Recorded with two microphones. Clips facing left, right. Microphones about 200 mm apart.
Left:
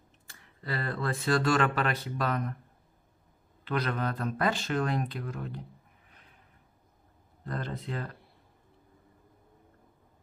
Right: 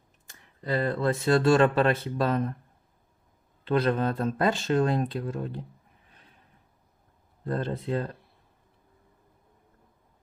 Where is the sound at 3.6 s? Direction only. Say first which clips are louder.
Right 7 dB; 25° right (ahead or behind).